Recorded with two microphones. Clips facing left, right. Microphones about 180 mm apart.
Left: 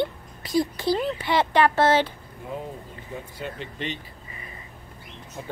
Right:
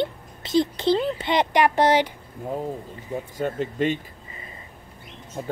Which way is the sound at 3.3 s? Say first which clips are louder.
Right 11 dB; 45° right (ahead or behind).